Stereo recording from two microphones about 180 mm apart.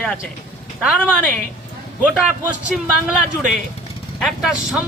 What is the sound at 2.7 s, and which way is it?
Speech, centre (ahead or behind).